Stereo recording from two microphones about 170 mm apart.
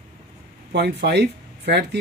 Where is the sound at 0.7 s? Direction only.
80° right.